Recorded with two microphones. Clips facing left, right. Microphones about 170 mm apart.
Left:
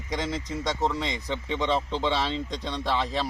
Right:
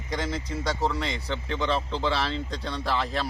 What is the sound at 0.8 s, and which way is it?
Speech, centre (ahead or behind).